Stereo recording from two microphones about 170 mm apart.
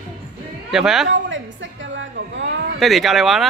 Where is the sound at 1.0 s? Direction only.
90° right.